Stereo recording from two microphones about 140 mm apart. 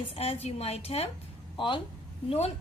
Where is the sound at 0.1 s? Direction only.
45° left (ahead or behind).